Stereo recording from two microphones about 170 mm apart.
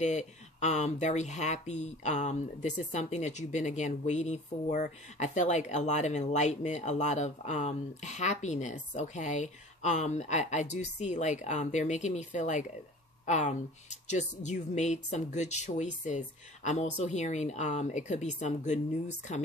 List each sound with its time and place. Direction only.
0.0 s speech: 45° left (ahead or behind)